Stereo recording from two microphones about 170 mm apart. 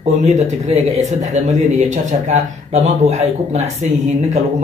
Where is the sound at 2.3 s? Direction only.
40° right (ahead or behind).